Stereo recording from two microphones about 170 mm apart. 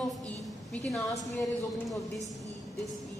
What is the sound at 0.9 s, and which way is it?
Speech, 20° left (ahead or behind).